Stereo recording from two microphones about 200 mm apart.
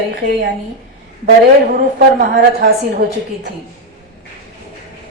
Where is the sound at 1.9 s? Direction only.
50° right (ahead or behind).